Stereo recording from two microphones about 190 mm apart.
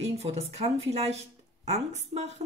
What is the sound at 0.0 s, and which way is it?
Speech, 35° right (ahead or behind).